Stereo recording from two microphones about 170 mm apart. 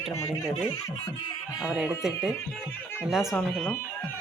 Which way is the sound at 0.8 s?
20° left (ahead or behind).